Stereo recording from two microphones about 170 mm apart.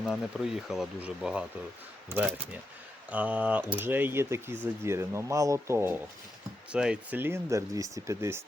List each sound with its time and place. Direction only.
0.0 s speech: centre (ahead or behind); by 8.4 s 15° right (ahead or behind)